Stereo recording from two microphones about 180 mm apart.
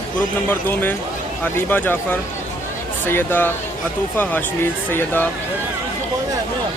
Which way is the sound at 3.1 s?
10° left (ahead or behind).